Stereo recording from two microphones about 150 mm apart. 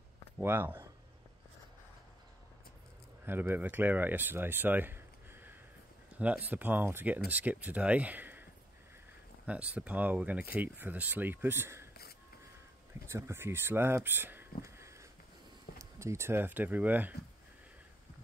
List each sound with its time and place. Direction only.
0.4 s speech: 15° right (ahead or behind)
3.3 s speech: 15° right (ahead or behind)
9.5 s speech: 10° right (ahead or behind)
13.0 s speech: 15° right (ahead or behind)
14.6 s a sound: 20° right (ahead or behind)
15.8 s speech: 20° right (ahead or behind)